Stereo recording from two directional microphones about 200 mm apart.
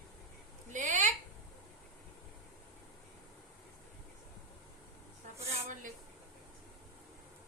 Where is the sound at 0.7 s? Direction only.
40° right (ahead or behind).